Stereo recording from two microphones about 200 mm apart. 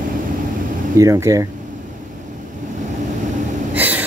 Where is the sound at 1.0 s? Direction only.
15° right (ahead or behind).